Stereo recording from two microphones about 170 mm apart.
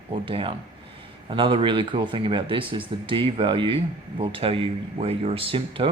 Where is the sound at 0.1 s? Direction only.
30° right (ahead or behind).